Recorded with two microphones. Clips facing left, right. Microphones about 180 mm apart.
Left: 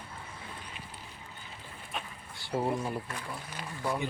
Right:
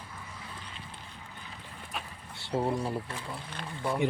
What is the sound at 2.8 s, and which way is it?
Speech, 30° right (ahead or behind).